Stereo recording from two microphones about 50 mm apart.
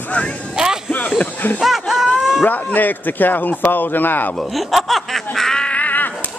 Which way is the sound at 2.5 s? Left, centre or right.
Left.